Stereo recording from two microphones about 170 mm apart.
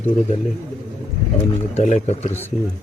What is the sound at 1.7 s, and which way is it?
Speech, 40° left (ahead or behind).